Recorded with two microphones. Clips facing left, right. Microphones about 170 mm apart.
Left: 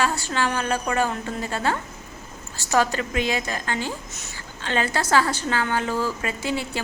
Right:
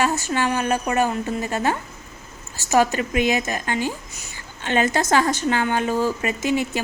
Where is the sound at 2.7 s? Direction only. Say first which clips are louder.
Right 3 dB; 15° right (ahead or behind).